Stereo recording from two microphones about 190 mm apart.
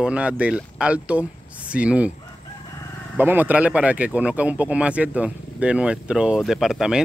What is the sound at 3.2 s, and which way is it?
A man's voice, 10° right (ahead or behind).